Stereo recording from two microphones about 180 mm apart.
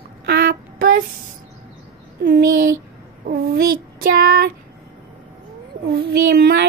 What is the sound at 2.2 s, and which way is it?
Speech, 55° right (ahead or behind).